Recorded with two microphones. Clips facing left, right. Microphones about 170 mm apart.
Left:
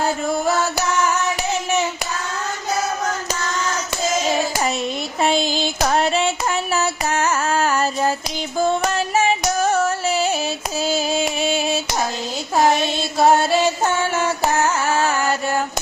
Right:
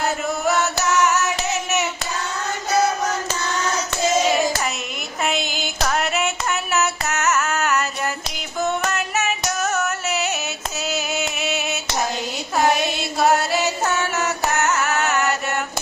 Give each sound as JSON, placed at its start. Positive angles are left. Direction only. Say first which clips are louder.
{"t": 5.2, "sound": "a sound", "louder": "left 5 dB", "side_deg": 30}
{"t": 5.9, "sound": "female singing", "louder": "left 3 dB", "side_deg": 30}
{"t": 7.1, "sound": "carnatic music", "louder": "left 2 dB", "side_deg": 30}
{"t": 8.9, "sound": "female singing", "louder": "left 5 dB", "side_deg": 30}
{"t": 9.6, "sound": "music", "louder": "left 5 dB", "side_deg": 30}
{"t": 10.8, "sound": "child singing", "louder": "left 5 dB", "side_deg": 30}
{"t": 12.8, "sound": "music", "louder": "left 3 dB", "side_deg": 30}